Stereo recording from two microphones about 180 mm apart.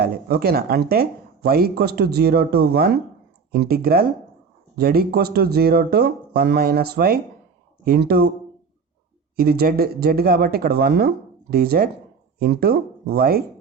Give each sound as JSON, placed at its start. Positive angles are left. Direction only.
{"t": 0.0, "sound": "speech", "side_deg": -60}
{"t": 9.3, "sound": "speech", "side_deg": -55}